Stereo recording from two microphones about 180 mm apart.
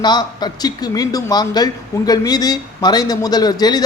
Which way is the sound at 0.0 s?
25° left (ahead or behind).